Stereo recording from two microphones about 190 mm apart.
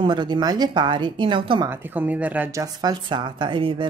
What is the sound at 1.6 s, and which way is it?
Speech, 10° right (ahead or behind).